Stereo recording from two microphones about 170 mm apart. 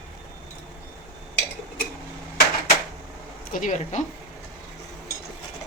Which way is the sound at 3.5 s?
45° left (ahead or behind).